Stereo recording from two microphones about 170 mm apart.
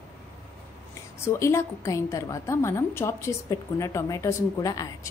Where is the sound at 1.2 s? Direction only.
15° left (ahead or behind).